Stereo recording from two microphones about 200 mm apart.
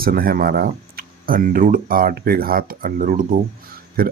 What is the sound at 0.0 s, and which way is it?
Speech, 45° right (ahead or behind).